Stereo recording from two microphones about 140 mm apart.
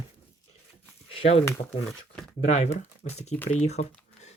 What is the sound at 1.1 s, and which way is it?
Speech, 45° left (ahead or behind).